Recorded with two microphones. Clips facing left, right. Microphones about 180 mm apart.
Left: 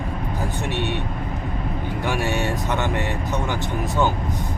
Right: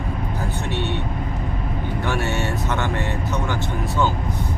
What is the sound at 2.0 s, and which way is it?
Speech, 15° left (ahead or behind).